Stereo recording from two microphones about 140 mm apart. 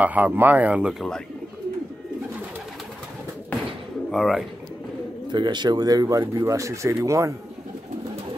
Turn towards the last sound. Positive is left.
turn(degrees=-20)  # may be behind; listen again after turning